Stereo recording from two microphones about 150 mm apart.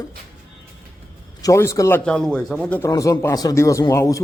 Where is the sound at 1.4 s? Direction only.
20° left (ahead or behind); by 2.5 s 5° left (ahead or behind).